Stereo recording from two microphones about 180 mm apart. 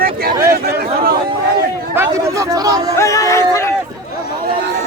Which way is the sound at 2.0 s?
20° right (ahead or behind).